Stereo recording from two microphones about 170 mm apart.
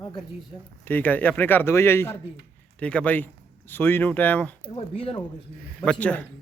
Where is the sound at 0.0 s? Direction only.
25° left (ahead or behind).